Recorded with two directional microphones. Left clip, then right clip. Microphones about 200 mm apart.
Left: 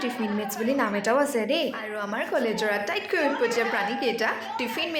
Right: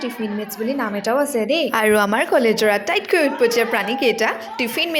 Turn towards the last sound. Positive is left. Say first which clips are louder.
# right 6 dB
turn(degrees=-35)  # may be behind; listen again after turning